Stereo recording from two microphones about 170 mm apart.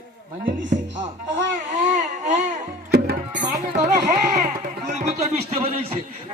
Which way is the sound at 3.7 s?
45° right (ahead or behind).